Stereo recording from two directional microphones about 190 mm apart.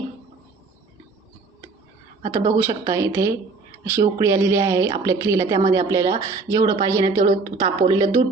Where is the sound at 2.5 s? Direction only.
15° right (ahead or behind).